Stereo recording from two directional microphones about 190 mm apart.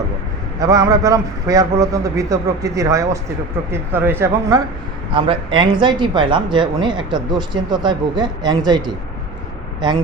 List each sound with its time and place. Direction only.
0.6 s a man's voice: 20° right (ahead or behind)
5.1 s speech: 25° right (ahead or behind)